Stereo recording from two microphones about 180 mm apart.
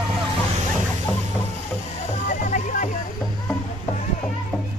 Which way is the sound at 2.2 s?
45° left (ahead or behind).